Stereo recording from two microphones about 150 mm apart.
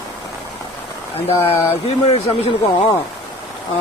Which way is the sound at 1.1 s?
40° left (ahead or behind).